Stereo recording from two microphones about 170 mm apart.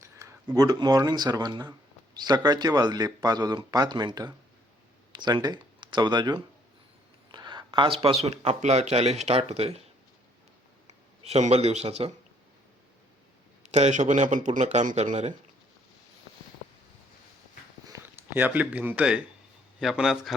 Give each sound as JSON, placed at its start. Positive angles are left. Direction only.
{"t": 0.0, "sound": "speech", "side_deg": -20}
{"t": 10.8, "sound": "speech", "side_deg": -40}
{"t": 13.6, "sound": "a man's voice", "side_deg": -40}
{"t": 17.8, "sound": "a man's voice", "side_deg": -15}